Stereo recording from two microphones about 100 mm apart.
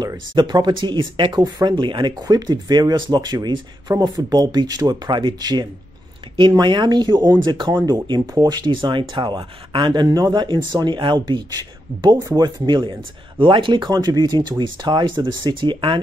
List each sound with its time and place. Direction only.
0.3 s speech: 45° right (ahead or behind)